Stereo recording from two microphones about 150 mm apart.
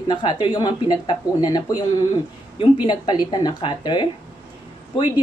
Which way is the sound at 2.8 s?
30° left (ahead or behind).